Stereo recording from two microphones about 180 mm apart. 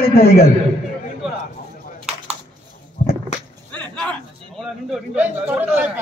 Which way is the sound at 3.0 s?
50° left (ahead or behind).